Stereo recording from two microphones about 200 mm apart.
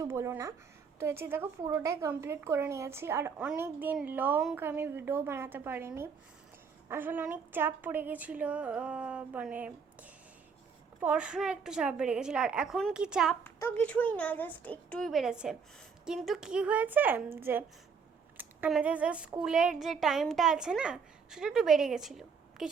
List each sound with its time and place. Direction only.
0.0 s a woman's voice: 15° right (ahead or behind)
13.4 s a woman's voice: 10° left (ahead or behind)